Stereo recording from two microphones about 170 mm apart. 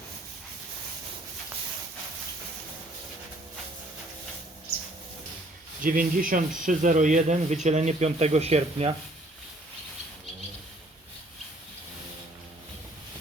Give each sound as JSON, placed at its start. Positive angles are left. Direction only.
{"t": 5.8, "sound": "speech", "side_deg": -55}